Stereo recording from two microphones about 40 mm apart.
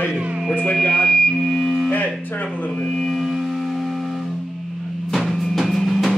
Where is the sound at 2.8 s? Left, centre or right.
Centre.